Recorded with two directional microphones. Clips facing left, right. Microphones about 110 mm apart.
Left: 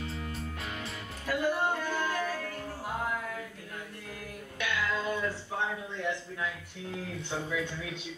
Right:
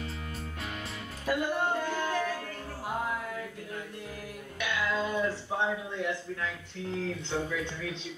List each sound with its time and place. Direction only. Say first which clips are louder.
1.2 s music: even; 15° right (ahead or behind)
4.6 s a sound: right 1 dB; 20° right (ahead or behind)
7.0 s speech: right 4 dB; 10° left (ahead or behind)